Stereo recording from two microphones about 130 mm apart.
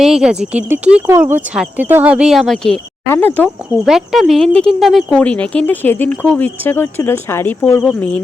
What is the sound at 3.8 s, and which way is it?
Speech, centre (ahead or behind).